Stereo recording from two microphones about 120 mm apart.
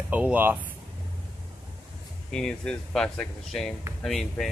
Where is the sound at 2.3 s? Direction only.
5° left (ahead or behind).